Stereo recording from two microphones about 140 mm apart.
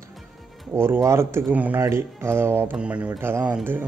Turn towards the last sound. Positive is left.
turn(degrees=-15)  # may be behind; listen again after turning